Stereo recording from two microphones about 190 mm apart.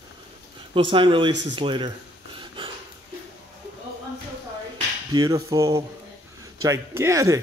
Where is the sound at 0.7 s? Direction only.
25° right (ahead or behind).